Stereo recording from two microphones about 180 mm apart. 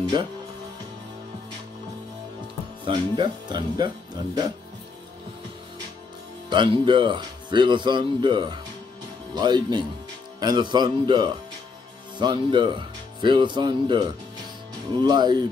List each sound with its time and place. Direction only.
0.0 s speech: 25° right (ahead or behind)
2.8 s speech: 25° right (ahead or behind)
6.5 s speech: 25° right (ahead or behind)